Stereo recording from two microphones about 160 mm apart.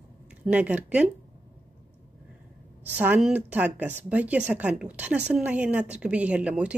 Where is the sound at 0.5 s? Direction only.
10° right (ahead or behind).